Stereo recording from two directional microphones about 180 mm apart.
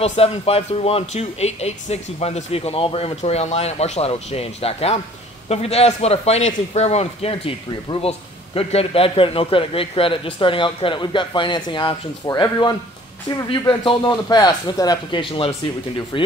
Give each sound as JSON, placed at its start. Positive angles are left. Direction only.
{"t": 0.0, "sound": "a man's voice", "side_deg": 35}